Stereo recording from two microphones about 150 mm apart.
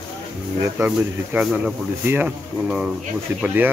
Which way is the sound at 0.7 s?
10° right (ahead or behind).